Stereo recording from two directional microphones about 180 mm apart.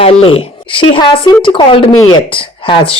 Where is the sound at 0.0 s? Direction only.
30° left (ahead or behind).